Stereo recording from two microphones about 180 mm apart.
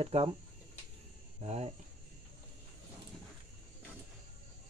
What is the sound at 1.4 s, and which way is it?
Speech, 35° right (ahead or behind).